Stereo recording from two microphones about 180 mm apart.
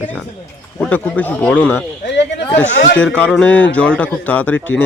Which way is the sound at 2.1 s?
70° left (ahead or behind).